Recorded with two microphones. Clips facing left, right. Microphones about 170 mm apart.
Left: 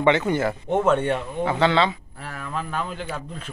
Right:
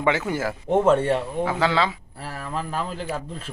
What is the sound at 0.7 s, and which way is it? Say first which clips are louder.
Speech: right 2 dB; 30° right (ahead or behind).